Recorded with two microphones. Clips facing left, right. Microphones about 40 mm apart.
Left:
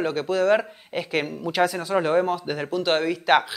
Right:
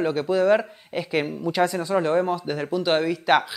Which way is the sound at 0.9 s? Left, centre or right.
Left.